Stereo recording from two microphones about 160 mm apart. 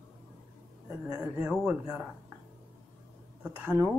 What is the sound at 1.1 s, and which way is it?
Speech, 15° right (ahead or behind).